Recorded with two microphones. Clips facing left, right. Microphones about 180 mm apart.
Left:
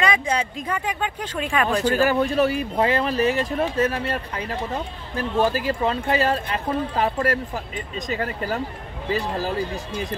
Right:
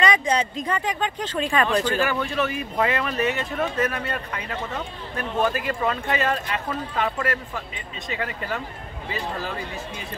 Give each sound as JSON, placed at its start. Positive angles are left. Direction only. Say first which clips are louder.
{"t": 0.0, "sound": "speech", "louder": "right 1 dB", "side_deg": 5}
{"t": 2.0, "sound": "speech", "louder": "left 5 dB", "side_deg": 40}